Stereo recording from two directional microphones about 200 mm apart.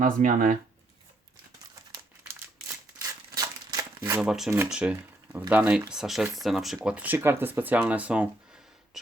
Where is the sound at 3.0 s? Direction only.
15° right (ahead or behind).